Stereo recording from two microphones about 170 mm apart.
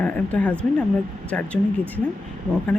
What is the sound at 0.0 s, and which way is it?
Speech, 5° left (ahead or behind).